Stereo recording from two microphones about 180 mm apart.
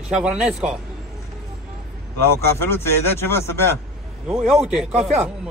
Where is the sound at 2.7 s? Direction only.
15° left (ahead or behind).